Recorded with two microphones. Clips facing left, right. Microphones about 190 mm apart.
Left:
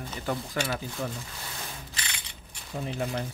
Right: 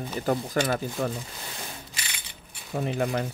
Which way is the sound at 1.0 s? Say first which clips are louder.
Right 5 dB; 70° right (ahead or behind).